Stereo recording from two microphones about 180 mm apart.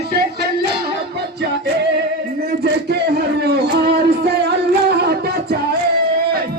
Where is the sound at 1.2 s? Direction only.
65° right (ahead or behind).